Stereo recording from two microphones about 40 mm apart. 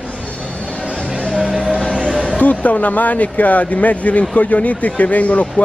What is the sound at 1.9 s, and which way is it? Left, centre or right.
Music, right.